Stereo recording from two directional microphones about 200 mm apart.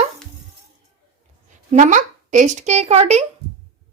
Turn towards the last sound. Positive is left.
turn(degrees=-35)  # may be behind; listen again after turning